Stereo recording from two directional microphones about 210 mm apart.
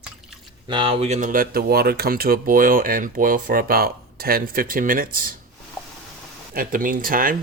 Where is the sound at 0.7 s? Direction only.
25° right (ahead or behind); by 5.1 s 40° right (ahead or behind).